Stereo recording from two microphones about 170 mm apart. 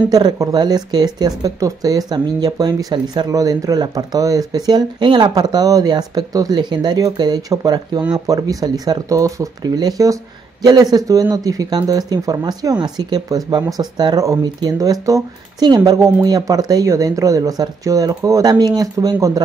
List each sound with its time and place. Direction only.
0.1 s speech: 25° right (ahead or behind)